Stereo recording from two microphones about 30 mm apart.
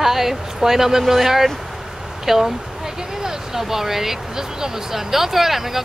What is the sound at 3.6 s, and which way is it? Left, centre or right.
Speech, centre.